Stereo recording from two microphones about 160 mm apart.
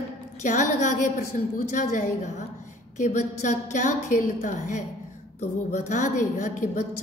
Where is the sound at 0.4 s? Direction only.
50° left (ahead or behind).